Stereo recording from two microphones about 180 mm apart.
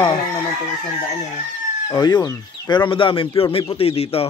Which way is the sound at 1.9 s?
25° left (ahead or behind).